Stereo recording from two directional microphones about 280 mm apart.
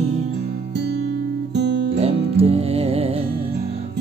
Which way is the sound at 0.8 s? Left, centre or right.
Right.